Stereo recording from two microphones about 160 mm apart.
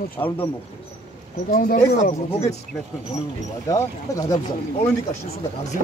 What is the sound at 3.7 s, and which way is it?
Speech, 20° left (ahead or behind).